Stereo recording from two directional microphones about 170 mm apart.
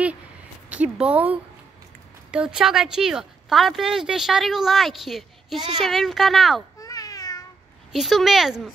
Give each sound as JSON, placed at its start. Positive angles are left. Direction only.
{"t": 0.7, "sound": "speech", "side_deg": -10}
{"t": 6.8, "sound": "cat", "side_deg": 20}
{"t": 7.9, "sound": "speech", "side_deg": 0}